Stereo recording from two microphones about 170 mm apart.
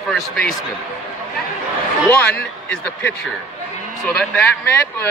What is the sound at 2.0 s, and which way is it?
A man's voice, 10° left (ahead or behind).